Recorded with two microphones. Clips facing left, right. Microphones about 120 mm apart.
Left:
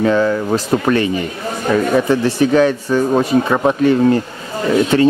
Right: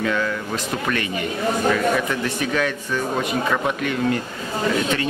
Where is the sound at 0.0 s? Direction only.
30° left (ahead or behind).